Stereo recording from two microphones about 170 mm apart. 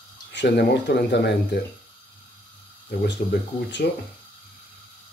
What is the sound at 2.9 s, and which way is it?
Speech, 70° left (ahead or behind).